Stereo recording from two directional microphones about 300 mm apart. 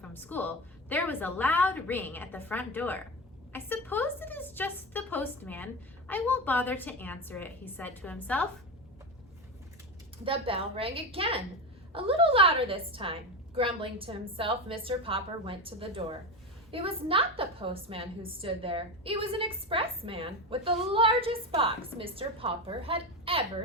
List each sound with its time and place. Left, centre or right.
0.0 s a woman's voice: centre
10.2 s a woman's voice: centre